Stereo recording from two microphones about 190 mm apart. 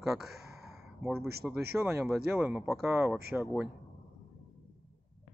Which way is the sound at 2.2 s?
10° right (ahead or behind).